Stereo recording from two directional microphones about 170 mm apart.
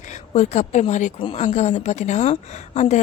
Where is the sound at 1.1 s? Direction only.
30° left (ahead or behind).